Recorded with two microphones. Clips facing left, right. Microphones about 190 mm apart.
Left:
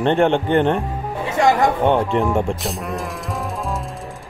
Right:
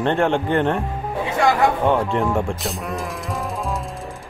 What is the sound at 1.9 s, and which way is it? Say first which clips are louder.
Speech: left 2 dB; centre (ahead or behind).